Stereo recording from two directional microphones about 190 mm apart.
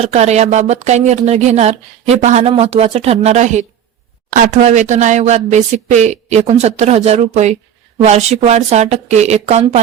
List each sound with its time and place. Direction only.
0.0 s speech: 35° right (ahead or behind)